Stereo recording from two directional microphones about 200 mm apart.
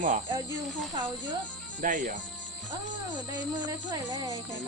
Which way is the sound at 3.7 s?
20° right (ahead or behind).